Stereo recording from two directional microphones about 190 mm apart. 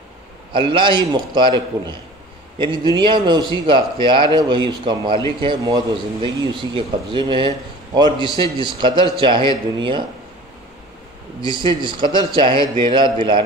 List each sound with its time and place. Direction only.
0.5 s speech: 25° right (ahead or behind)
2.6 s speech: 25° right (ahead or behind)
11.4 s speech: 25° right (ahead or behind)